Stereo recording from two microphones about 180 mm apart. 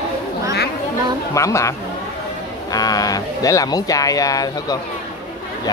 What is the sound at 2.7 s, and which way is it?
A man's voice, 20° left (ahead or behind).